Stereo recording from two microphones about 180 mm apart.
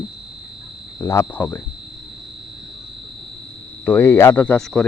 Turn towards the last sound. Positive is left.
turn(degrees=5)  # may be behind; listen again after turning